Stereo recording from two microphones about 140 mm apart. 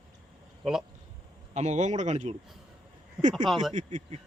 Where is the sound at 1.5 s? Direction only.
55° right (ahead or behind).